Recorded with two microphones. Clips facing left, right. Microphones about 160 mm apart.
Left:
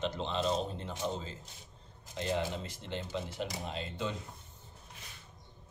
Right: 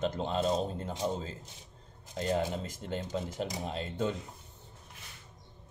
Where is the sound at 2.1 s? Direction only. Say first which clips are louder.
Right 3 dB; 45° right (ahead or behind).